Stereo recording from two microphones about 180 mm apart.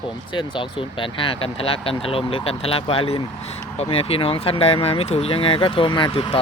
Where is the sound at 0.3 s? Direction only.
25° left (ahead or behind).